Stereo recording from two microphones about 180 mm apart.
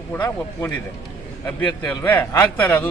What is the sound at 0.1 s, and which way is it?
Speech, 10° left (ahead or behind).